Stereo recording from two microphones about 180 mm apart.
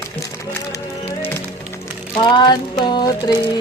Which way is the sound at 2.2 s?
25° left (ahead or behind).